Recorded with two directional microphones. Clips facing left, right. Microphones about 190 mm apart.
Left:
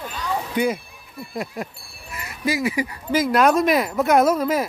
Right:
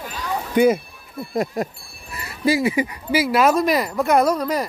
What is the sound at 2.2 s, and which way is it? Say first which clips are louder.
Speech: right 4 dB; 30° right (ahead or behind).